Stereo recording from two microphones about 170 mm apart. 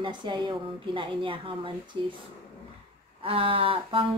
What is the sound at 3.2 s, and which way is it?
Speech, 35° right (ahead or behind).